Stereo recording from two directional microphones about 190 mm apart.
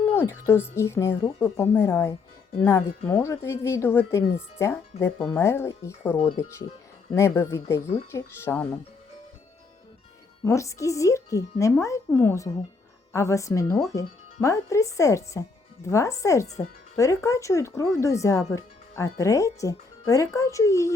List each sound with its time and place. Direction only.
0.1 s speech: 10° left (ahead or behind)
6.1 s speech: 30° left (ahead or behind)
7.1 s speech: 15° left (ahead or behind)
10.4 s speech: 15° left (ahead or behind)
16.5 s speech: 35° left (ahead or behind)
17.0 s speech: 15° left (ahead or behind)